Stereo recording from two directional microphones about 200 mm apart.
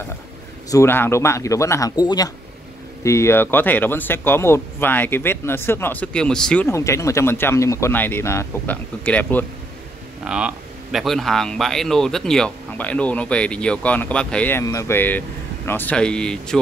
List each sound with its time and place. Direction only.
0.7 s speech: 15° left (ahead or behind)
10.2 s speech: 5° right (ahead or behind)